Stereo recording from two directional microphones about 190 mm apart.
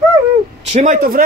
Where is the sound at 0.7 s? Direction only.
40° right (ahead or behind).